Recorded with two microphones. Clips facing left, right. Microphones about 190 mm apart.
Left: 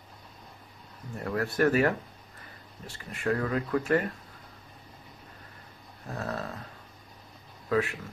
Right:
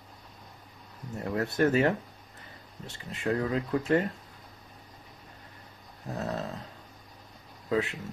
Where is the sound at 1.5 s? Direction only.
20° right (ahead or behind).